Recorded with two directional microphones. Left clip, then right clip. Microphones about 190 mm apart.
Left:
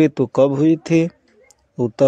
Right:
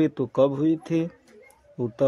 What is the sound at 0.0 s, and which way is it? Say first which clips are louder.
Speech: left 6 dB; 30° left (ahead or behind).